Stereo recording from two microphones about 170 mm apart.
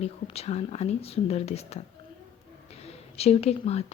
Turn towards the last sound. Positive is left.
turn(degrees=40)  # may be behind; listen again after turning